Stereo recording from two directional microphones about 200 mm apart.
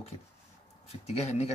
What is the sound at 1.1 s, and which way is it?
Speech, 30° left (ahead or behind).